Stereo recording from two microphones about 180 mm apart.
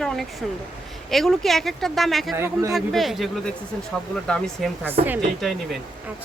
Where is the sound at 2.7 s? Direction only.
Centre (ahead or behind).